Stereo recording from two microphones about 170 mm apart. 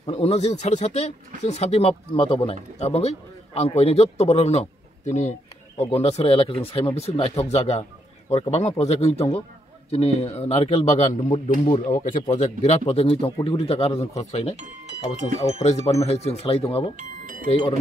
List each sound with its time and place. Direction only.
0.0 s speech: 35° left (ahead or behind)
16.9 s speech: 55° right (ahead or behind)